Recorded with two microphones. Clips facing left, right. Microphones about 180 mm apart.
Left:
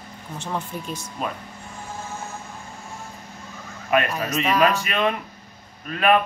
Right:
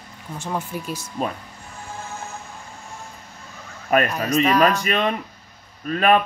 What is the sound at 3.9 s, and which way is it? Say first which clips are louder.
Speech: right 2 dB; 40° right (ahead or behind).